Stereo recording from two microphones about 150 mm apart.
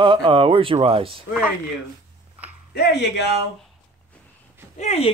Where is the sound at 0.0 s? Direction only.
35° right (ahead or behind).